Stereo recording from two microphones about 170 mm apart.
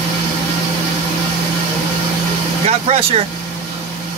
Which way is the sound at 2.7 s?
35° right (ahead or behind).